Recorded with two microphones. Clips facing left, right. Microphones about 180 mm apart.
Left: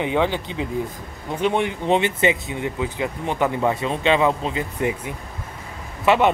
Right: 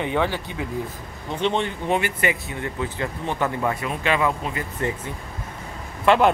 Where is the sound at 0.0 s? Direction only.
15° left (ahead or behind).